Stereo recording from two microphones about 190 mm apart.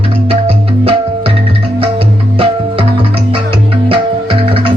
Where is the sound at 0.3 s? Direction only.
30° right (ahead or behind).